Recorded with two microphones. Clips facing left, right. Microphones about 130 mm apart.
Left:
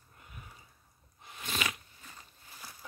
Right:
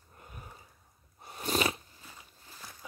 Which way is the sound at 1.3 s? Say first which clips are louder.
Right 7 dB; 40° right (ahead or behind).